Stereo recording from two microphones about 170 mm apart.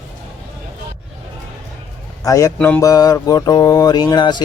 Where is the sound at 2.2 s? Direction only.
20° left (ahead or behind).